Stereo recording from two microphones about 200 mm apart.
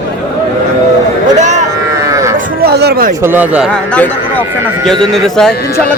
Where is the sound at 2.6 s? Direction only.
55° right (ahead or behind).